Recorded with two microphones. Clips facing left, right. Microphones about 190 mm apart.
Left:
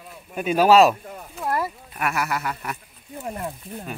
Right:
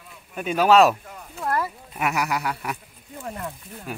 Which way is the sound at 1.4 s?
15° left (ahead or behind).